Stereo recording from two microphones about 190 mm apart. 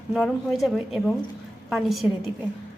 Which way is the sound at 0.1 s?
Centre (ahead or behind).